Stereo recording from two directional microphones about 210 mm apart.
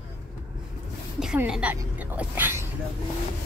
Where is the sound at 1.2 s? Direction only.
5° right (ahead or behind).